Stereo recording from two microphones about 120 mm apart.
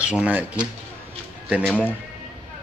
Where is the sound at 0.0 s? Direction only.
10° right (ahead or behind).